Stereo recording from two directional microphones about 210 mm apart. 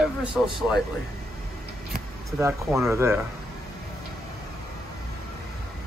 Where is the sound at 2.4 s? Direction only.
15° right (ahead or behind).